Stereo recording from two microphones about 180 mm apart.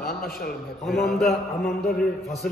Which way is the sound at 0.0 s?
60° left (ahead or behind).